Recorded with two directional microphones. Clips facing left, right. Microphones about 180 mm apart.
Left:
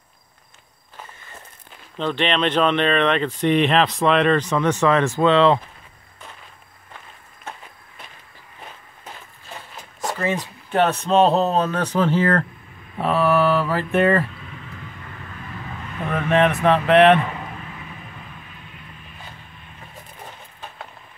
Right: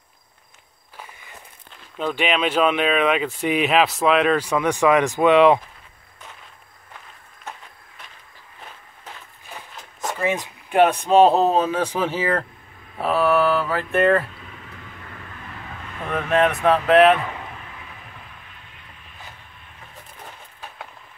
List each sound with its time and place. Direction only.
0.9 s walk: 10° right (ahead or behind)
2.0 s speech: 5° right (ahead or behind)
10.1 s speech: 15° right (ahead or behind)
12.9 s mantra: centre (ahead or behind)
16.1 s mantra: centre (ahead or behind)